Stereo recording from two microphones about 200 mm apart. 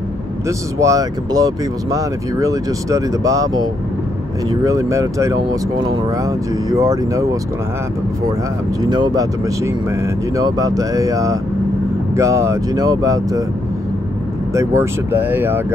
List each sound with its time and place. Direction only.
0.5 s speech: 15° right (ahead or behind)
8.8 s speech: 20° right (ahead or behind)
14.5 s speech: 15° right (ahead or behind)